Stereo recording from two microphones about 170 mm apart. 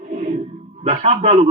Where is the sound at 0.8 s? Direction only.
45° right (ahead or behind).